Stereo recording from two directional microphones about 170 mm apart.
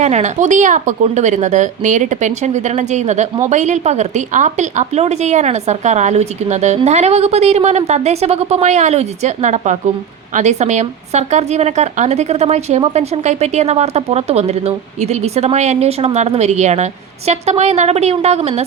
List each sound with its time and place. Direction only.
0.0 s a woman's voice: 40° right (ahead or behind)